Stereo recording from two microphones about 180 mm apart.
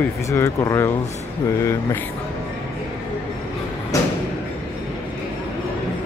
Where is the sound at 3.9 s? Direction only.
20° left (ahead or behind).